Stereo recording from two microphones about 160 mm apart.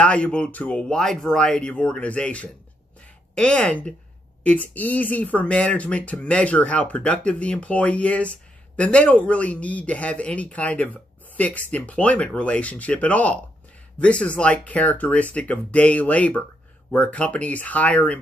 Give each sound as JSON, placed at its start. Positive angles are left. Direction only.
{"t": 0.0, "sound": "speech", "side_deg": 5}